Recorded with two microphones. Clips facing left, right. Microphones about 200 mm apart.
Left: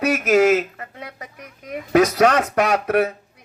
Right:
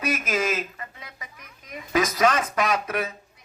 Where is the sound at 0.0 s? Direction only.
70° left (ahead or behind).